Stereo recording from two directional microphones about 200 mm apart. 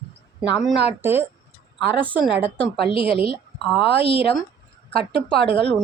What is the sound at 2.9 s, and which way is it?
Speech, 25° left (ahead or behind).